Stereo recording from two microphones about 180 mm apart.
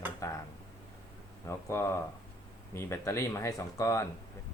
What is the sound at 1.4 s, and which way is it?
Speech, 15° left (ahead or behind).